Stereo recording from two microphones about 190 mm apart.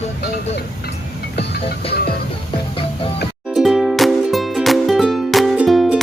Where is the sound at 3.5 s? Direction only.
Centre (ahead or behind).